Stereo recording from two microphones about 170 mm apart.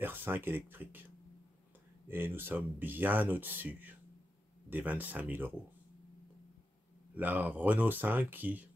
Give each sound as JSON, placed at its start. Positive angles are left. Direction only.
{"t": 0.0, "sound": "speech", "side_deg": -10}
{"t": 2.0, "sound": "speech", "side_deg": -10}
{"t": 7.2, "sound": "speech", "side_deg": -10}